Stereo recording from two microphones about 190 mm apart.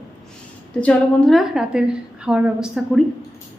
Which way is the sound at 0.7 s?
5° left (ahead or behind).